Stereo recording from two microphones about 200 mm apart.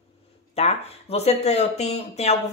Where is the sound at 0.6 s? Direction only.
30° left (ahead or behind).